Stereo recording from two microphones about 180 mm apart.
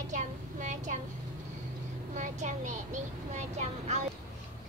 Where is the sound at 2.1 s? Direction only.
40° right (ahead or behind).